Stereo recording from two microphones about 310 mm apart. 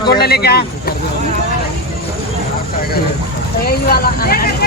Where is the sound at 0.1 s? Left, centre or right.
Left.